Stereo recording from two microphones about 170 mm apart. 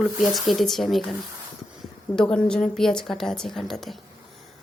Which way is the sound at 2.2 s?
5° left (ahead or behind).